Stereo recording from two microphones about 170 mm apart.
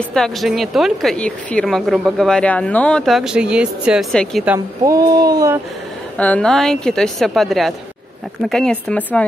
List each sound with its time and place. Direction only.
0.1 s speech: centre (ahead or behind)
4.8 s speech: 20° right (ahead or behind)
6.1 s speech: 10° left (ahead or behind)